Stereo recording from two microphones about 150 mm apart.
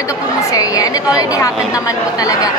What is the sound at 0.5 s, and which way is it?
Speech, 25° left (ahead or behind).